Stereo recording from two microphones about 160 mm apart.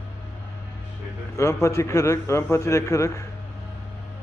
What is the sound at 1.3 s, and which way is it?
A man's voice, 20° left (ahead or behind).